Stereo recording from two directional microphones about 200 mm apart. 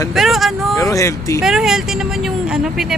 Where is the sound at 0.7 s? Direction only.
15° left (ahead or behind).